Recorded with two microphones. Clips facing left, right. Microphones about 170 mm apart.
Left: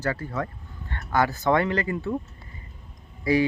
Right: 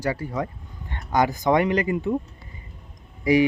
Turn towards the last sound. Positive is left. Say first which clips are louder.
# right 3 dB
turn(degrees=-15)  # may be behind; listen again after turning